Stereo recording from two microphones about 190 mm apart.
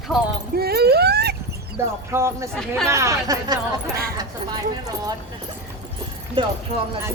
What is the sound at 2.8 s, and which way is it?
Speech, 15° right (ahead or behind).